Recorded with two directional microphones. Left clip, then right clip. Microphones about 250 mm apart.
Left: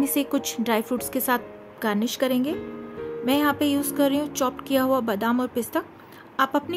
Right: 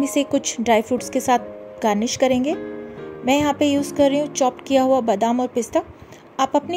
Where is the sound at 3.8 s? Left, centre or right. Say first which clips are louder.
Right 5 dB; left.